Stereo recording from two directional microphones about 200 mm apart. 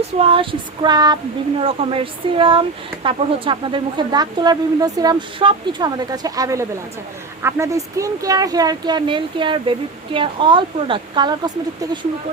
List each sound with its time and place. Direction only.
0.2 s speech: 25° right (ahead or behind)